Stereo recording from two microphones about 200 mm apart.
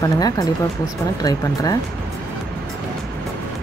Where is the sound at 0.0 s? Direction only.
20° left (ahead or behind).